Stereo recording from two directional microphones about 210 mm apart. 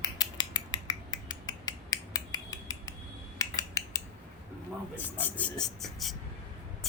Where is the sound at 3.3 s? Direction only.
15° left (ahead or behind).